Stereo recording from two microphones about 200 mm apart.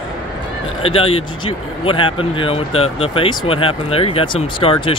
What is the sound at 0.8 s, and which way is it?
Speech, 30° left (ahead or behind).